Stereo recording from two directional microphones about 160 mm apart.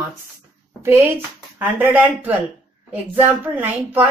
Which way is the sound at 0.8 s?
15° right (ahead or behind).